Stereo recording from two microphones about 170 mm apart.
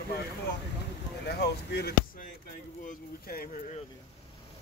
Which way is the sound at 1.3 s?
70° left (ahead or behind).